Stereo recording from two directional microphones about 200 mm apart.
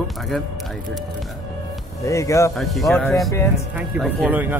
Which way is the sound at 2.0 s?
15° left (ahead or behind).